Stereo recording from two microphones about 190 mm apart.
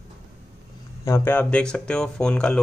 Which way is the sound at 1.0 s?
15° left (ahead or behind).